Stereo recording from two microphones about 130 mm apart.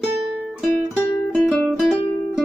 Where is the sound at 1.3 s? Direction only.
5° left (ahead or behind).